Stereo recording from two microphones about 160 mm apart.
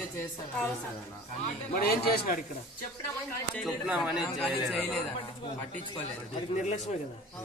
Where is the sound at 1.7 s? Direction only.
75° left (ahead or behind).